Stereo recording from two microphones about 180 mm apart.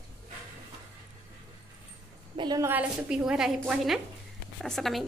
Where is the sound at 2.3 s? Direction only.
20° right (ahead or behind).